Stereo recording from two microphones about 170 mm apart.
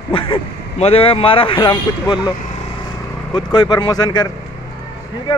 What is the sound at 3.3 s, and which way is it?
Speech, 25° left (ahead or behind).